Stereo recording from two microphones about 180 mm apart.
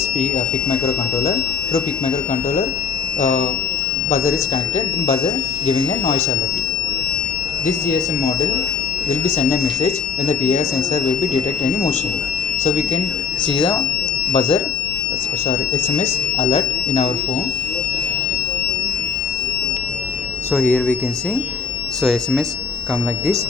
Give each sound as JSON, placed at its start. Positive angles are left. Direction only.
{"t": 3.2, "sound": "speech", "side_deg": 40}
{"t": 5.0, "sound": "speech", "side_deg": 35}
{"t": 9.2, "sound": "speech", "side_deg": 40}
{"t": 20.5, "sound": "speech", "side_deg": 10}
{"t": 22.0, "sound": "speech", "side_deg": 0}